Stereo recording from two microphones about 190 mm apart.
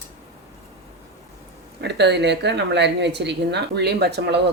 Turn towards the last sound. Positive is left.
turn(degrees=-65)  # may be behind; listen again after turning